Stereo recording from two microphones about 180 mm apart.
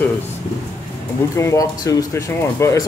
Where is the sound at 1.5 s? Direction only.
20° left (ahead or behind).